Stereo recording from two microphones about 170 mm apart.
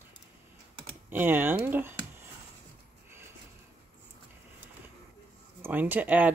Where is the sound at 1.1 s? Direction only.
10° right (ahead or behind).